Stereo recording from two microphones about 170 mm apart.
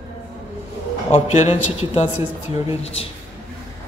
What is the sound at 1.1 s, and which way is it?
Speech, 40° left (ahead or behind).